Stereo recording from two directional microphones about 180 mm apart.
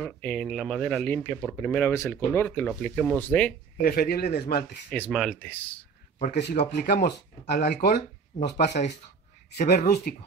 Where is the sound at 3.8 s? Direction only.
60° left (ahead or behind).